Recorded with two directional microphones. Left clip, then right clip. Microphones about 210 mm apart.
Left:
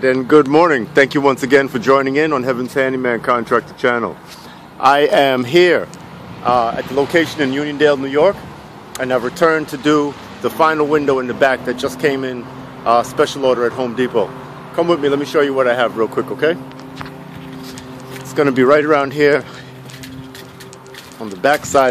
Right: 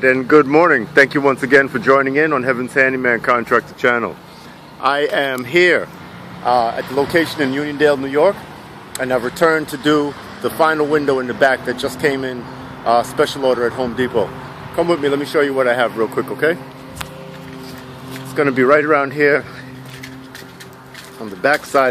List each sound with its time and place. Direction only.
0.0 s speech: 5° left (ahead or behind)
4.8 s speech: 35° left (ahead or behind)
6.4 s speech: centre (ahead or behind)
18.3 s speech: 20° left (ahead or behind)
21.4 s speech: 10° left (ahead or behind)